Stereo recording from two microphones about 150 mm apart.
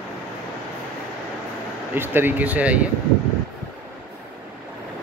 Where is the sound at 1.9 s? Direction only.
15° right (ahead or behind).